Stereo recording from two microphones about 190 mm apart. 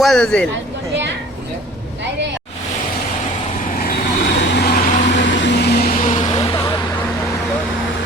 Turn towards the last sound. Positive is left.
turn(degrees=35)  # may be behind; listen again after turning